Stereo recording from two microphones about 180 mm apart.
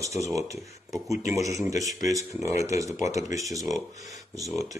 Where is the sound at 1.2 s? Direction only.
20° right (ahead or behind).